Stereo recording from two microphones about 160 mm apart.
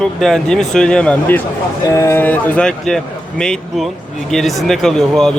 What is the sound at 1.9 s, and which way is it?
Speech, 20° left (ahead or behind).